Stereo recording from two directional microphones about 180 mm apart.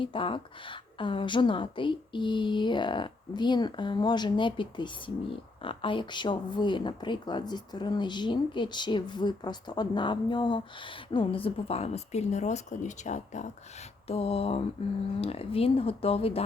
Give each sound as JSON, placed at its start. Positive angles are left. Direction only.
{"t": 0.0, "sound": "a woman's voice", "side_deg": 30}